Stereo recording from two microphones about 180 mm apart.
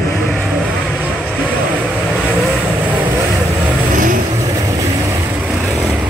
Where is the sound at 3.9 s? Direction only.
50° right (ahead or behind).